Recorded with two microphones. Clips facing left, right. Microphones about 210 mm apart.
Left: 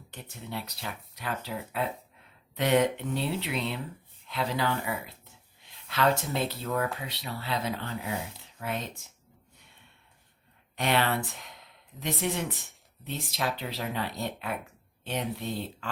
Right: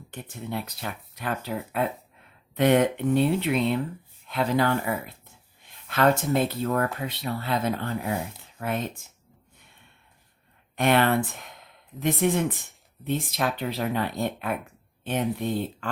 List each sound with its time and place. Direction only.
0.1 s speech: 50° right (ahead or behind)
10.8 s speech: 50° right (ahead or behind)